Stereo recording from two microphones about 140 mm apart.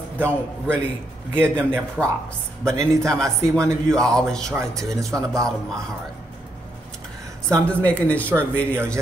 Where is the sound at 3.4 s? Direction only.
20° right (ahead or behind).